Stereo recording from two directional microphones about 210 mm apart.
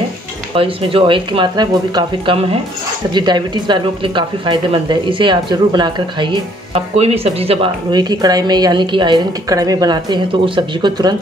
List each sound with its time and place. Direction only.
0.6 s speech: 25° right (ahead or behind)